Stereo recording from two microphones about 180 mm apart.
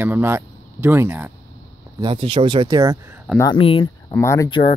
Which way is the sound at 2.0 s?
30° right (ahead or behind).